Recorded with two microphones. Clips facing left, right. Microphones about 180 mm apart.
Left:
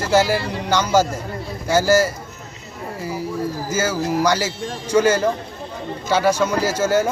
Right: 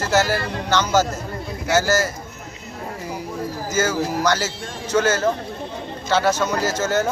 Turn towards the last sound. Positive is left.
turn(degrees=10)  # may be behind; listen again after turning